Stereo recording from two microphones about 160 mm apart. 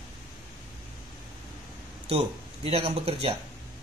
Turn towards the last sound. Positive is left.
turn(degrees=-40)  # may be behind; listen again after turning